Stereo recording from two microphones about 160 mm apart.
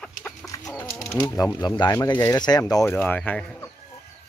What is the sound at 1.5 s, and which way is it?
Speech, 25° left (ahead or behind).